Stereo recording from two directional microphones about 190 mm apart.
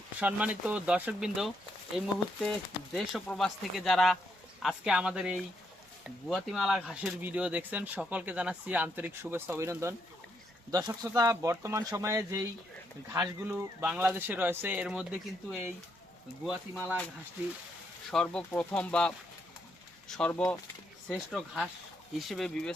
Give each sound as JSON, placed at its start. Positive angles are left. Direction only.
{"t": 0.2, "sound": "speech", "side_deg": -10}
{"t": 18.1, "sound": "speech", "side_deg": 5}